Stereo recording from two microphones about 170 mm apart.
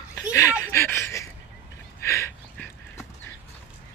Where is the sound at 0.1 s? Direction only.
15° left (ahead or behind).